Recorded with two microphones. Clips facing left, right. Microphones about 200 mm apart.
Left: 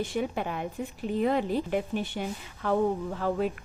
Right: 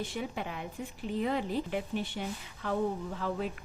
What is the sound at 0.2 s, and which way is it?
A woman's voice, 55° left (ahead or behind).